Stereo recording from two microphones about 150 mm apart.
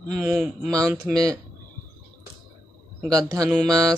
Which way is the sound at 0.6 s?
25° right (ahead or behind).